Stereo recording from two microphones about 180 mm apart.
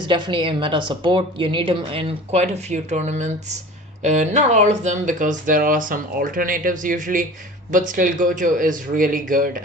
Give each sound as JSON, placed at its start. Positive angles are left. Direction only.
{"t": 0.0, "sound": "a woman's voice", "side_deg": -25}